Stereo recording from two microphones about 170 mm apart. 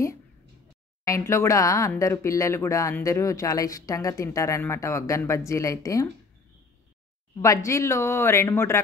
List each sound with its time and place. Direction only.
1.0 s speech: 15° left (ahead or behind)
7.4 s speech: 20° left (ahead or behind)